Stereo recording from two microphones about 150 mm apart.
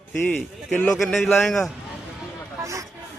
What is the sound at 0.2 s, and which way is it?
A man's voice, 10° left (ahead or behind).